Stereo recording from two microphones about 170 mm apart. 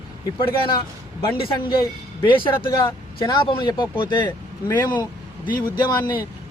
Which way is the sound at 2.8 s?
25° left (ahead or behind).